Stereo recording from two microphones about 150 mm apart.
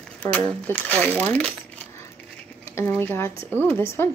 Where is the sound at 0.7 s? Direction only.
10° left (ahead or behind).